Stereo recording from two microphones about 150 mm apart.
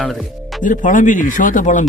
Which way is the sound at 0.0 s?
Centre (ahead or behind).